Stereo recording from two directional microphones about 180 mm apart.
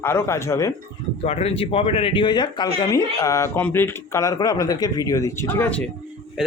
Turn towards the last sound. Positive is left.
turn(degrees=10)  # may be behind; listen again after turning